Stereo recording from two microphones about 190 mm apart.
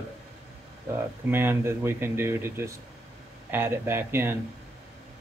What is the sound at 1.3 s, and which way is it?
Speech, 10° right (ahead or behind).